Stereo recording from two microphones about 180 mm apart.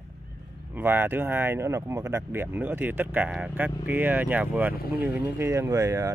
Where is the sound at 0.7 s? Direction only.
10° right (ahead or behind).